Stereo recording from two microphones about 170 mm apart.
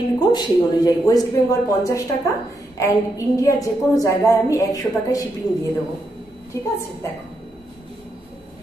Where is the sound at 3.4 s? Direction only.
20° left (ahead or behind).